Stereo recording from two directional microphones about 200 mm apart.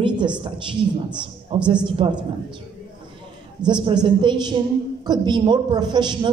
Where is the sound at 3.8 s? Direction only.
25° right (ahead or behind).